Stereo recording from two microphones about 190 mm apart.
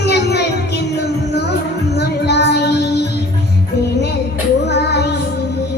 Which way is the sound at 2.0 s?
60° left (ahead or behind).